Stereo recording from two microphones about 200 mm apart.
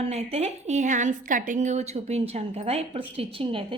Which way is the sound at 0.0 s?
30° right (ahead or behind).